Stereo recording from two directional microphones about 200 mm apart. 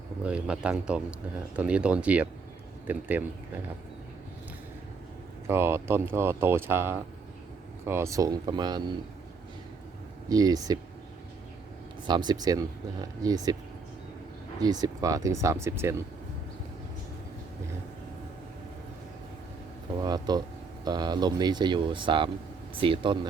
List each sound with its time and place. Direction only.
0.3 s speech: 5° right (ahead or behind)
5.5 s speech: 10° right (ahead or behind)
10.2 s speech: 20° right (ahead or behind)
12.0 s speech: 20° right (ahead or behind)
14.6 s speech: 20° right (ahead or behind)
20.0 s speech: 20° right (ahead or behind)